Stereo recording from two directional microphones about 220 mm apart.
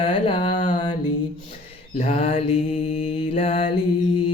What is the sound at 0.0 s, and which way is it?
Mantra, 25° left (ahead or behind).